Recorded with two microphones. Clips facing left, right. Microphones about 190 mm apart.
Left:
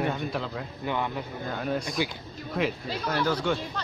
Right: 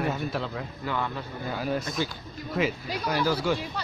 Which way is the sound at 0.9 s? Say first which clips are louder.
Left 1 dB; 20° left (ahead or behind).